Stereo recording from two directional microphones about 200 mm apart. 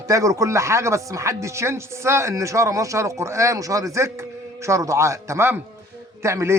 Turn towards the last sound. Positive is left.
turn(degrees=-15)  # may be behind; listen again after turning